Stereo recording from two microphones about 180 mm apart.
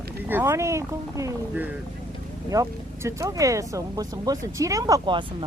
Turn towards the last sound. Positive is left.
turn(degrees=-25)  # may be behind; listen again after turning